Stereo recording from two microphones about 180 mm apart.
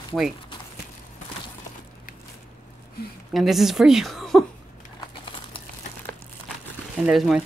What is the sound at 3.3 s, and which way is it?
Speech, centre (ahead or behind).